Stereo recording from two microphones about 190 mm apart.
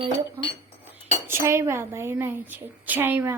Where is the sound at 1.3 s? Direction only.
15° right (ahead or behind).